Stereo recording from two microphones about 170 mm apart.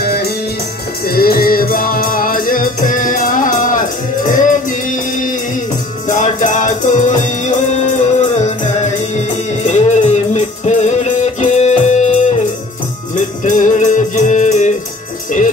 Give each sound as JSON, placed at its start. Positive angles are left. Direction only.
{"t": 0.0, "sound": "music", "side_deg": 65}
{"t": 13.4, "sound": "music", "side_deg": 45}